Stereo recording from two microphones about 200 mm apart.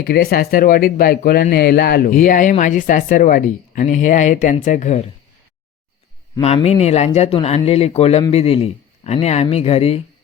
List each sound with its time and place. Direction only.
0.0 s speech: 50° left (ahead or behind)
6.4 s speech: 30° left (ahead or behind)